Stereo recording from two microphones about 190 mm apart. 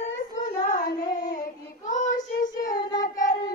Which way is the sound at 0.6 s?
50° left (ahead or behind).